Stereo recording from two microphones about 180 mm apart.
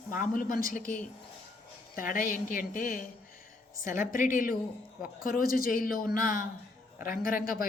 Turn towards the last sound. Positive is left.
turn(degrees=50)  # may be behind; listen again after turning